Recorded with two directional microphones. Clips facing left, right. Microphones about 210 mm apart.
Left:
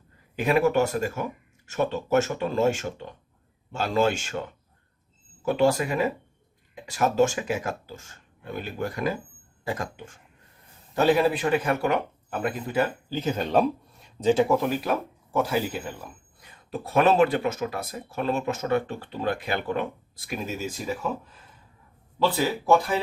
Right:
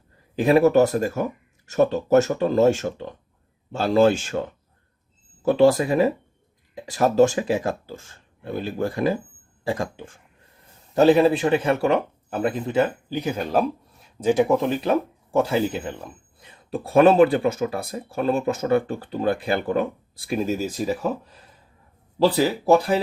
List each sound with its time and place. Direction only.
0.3 s speech: 35° right (ahead or behind)
5.5 s speech: 35° right (ahead or behind)
10.9 s speech: 30° right (ahead or behind)
22.2 s speech: 35° right (ahead or behind)